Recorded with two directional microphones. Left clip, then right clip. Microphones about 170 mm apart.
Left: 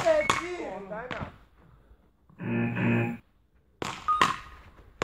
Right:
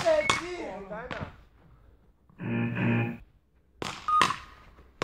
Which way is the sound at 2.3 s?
30° right (ahead or behind).